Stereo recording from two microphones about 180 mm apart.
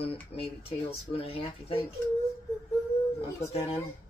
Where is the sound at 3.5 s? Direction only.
35° left (ahead or behind).